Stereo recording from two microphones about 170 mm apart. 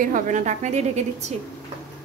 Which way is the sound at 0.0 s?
50° right (ahead or behind).